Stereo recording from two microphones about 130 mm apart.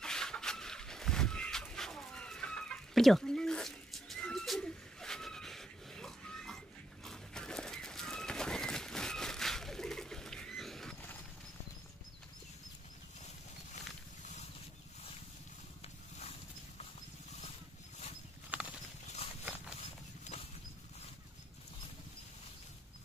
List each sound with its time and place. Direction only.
0.0 s a sound: 5° left (ahead or behind)
7.1 s bird: 5° left (ahead or behind)
16.2 s horse: 55° left (ahead or behind)
18.5 s clip-clop: 10° right (ahead or behind)
19.8 s horse: 55° left (ahead or behind)